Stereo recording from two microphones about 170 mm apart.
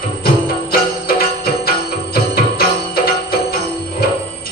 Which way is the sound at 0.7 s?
60° left (ahead or behind).